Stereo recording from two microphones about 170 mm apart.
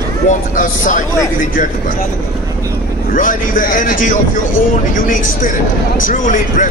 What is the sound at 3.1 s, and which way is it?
Speech, 55° left (ahead or behind).